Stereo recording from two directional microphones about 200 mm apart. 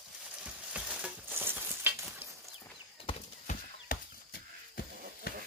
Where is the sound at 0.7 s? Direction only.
5° right (ahead or behind).